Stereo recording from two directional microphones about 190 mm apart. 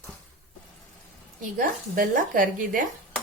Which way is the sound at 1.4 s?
45° right (ahead or behind).